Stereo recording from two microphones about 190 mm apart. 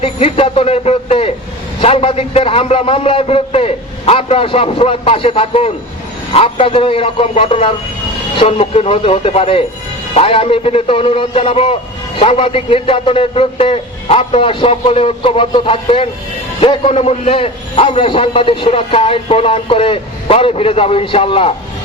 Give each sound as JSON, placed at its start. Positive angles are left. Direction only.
{"t": 0.0, "sound": "a man's voice", "side_deg": 30}